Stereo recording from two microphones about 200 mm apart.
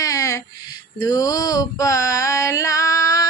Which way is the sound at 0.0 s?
15° left (ahead or behind).